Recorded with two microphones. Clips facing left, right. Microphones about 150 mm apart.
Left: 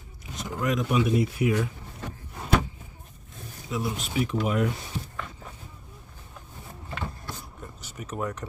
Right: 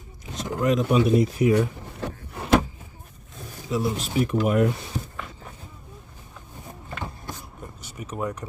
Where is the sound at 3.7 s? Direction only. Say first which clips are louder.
Right 4 dB; 35° right (ahead or behind).